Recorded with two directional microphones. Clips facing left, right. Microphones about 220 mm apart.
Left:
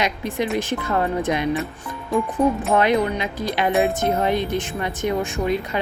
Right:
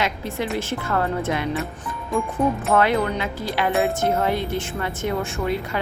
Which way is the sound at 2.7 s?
15° left (ahead or behind).